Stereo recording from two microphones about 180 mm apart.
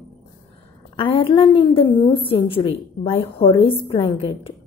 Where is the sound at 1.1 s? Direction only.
30° left (ahead or behind).